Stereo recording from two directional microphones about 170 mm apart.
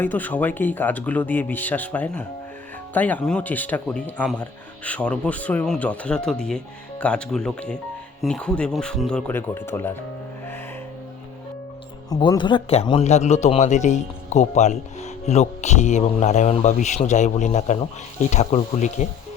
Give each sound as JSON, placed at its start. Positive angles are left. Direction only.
{"t": 0.0, "sound": "speech", "side_deg": 10}
{"t": 12.0, "sound": "a man's voice", "side_deg": 25}